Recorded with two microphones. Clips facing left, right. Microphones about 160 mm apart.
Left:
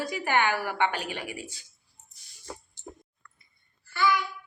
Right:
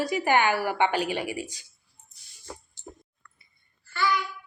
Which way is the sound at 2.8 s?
55° left (ahead or behind).